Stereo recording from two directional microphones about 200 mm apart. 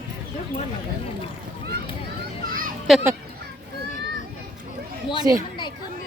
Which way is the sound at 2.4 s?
45° right (ahead or behind).